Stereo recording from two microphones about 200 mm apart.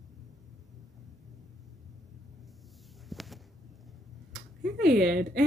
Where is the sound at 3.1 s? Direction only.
Centre (ahead or behind).